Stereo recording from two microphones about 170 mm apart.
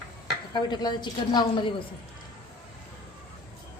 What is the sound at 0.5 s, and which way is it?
A woman's voice, 25° left (ahead or behind).